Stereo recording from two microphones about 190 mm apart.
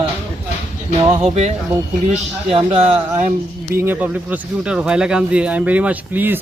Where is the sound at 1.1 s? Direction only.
35° right (ahead or behind).